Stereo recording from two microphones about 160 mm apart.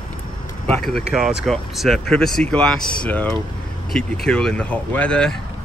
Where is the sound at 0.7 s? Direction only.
Centre (ahead or behind).